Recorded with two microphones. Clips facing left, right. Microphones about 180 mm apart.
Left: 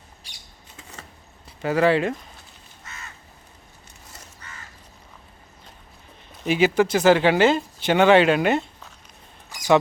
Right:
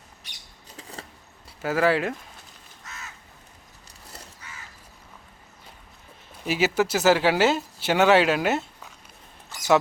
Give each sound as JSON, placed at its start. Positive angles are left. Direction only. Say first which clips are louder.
{"t": 0.8, "sound": "vehicle", "louder": "right 3 dB", "side_deg": -35}
{"t": 1.6, "sound": "speech", "louder": "left 3 dB", "side_deg": -5}
{"t": 2.8, "sound": "crow", "louder": "even", "side_deg": 0}
{"t": 4.4, "sound": "crow", "louder": "left 1 dB", "side_deg": -10}
{"t": 6.4, "sound": "speech", "louder": "left 4 dB", "side_deg": -5}
{"t": 9.5, "sound": "a sound", "louder": "even", "side_deg": 15}